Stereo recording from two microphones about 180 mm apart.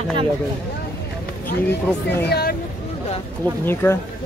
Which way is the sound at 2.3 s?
60° left (ahead or behind).